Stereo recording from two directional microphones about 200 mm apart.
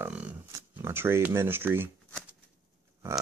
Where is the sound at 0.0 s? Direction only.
5° right (ahead or behind).